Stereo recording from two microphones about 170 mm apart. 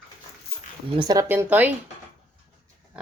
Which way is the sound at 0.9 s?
25° right (ahead or behind).